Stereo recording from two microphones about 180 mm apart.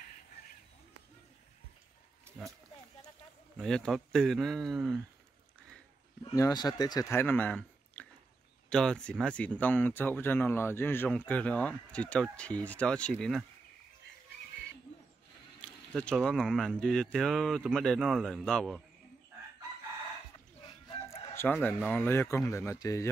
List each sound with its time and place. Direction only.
3.5 s speech: 5° left (ahead or behind)
6.3 s speech: 20° left (ahead or behind); by 13.5 s centre (ahead or behind)
15.6 s speech: 5° left (ahead or behind)
21.1 s chicken: 15° left (ahead or behind)
21.8 s speech: 10° left (ahead or behind)